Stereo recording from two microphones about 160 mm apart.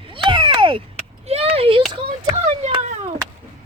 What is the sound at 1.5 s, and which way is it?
Speech, 35° right (ahead or behind).